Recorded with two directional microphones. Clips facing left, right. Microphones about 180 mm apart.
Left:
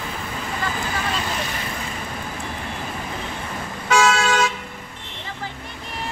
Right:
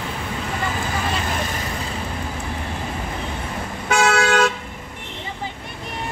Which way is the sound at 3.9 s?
60° right (ahead or behind).